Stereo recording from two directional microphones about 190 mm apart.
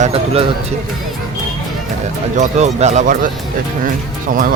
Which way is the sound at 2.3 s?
40° right (ahead or behind).